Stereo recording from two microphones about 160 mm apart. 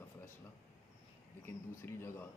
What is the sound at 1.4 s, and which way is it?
Speech, 15° left (ahead or behind).